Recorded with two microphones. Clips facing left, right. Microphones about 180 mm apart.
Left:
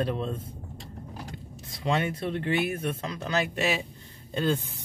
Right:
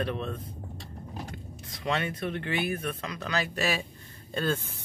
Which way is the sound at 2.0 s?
25° left (ahead or behind).